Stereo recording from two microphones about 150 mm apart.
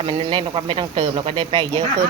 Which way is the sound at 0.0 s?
35° right (ahead or behind).